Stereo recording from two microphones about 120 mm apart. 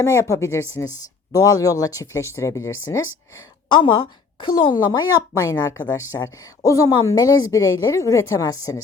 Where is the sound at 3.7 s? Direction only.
45° left (ahead or behind).